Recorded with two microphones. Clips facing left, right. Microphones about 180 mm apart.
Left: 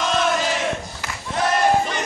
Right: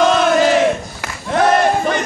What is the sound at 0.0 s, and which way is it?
Battle cry, 70° right (ahead or behind).